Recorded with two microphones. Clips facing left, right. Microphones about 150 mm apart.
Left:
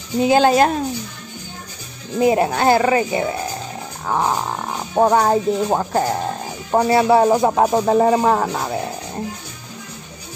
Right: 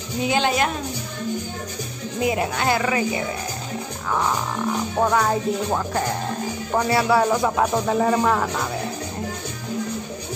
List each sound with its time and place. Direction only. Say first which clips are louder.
0.3 s music: left 8 dB; 35° left (ahead or behind)
2.2 s music: left 7 dB; 40° left (ahead or behind)